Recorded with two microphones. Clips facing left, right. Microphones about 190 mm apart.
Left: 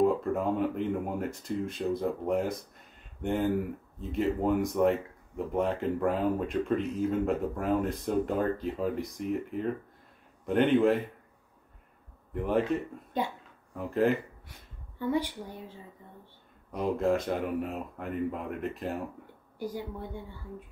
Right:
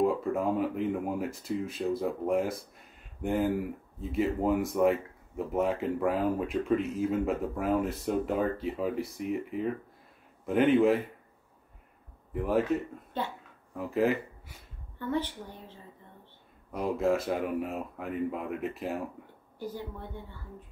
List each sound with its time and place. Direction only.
0.0 s speech: centre (ahead or behind)
12.3 s speech: centre (ahead or behind)
13.2 s a woman's voice: 15° left (ahead or behind)
13.7 s speech: 5° right (ahead or behind)
15.0 s a woman's voice: 10° left (ahead or behind)
16.7 s speech: 5° right (ahead or behind)
19.6 s a woman's voice: 10° left (ahead or behind)